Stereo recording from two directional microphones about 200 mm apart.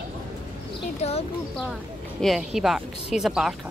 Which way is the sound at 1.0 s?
30° left (ahead or behind).